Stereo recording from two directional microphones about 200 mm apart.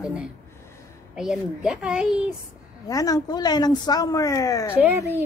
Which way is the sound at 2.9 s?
20° left (ahead or behind).